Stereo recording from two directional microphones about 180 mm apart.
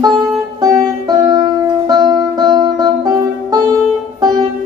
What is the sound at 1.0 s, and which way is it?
Music, 20° right (ahead or behind).